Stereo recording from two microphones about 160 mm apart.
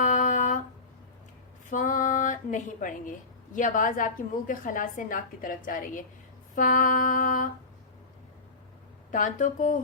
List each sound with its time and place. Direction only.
0.0 s a sound: 55° left (ahead or behind)
1.7 s speech: 55° left (ahead or behind)
9.1 s speech: 50° left (ahead or behind)